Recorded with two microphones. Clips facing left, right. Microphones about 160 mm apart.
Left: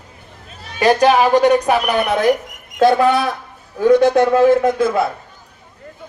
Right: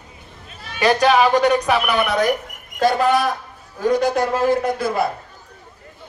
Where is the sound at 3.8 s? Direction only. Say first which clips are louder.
Left 6 dB; 60° left (ahead or behind).